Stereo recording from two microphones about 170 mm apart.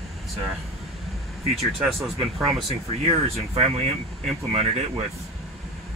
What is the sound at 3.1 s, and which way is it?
Speech, 35° right (ahead or behind).